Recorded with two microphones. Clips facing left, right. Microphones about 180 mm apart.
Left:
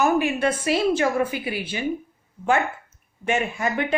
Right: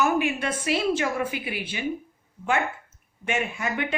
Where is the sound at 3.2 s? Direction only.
35° left (ahead or behind).